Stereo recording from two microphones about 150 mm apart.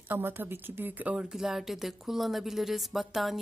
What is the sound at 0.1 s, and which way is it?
A woman's voice, 15° right (ahead or behind).